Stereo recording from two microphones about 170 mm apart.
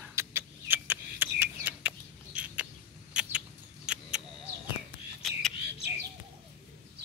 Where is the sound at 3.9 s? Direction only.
5° right (ahead or behind).